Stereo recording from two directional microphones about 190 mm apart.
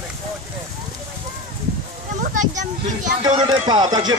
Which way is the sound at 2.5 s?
40° right (ahead or behind).